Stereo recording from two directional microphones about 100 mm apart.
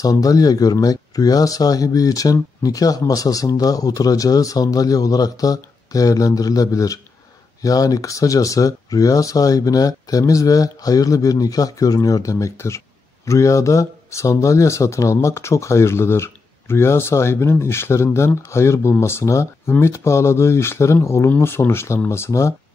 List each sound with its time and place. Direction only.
0.0 s speech: 35° left (ahead or behind)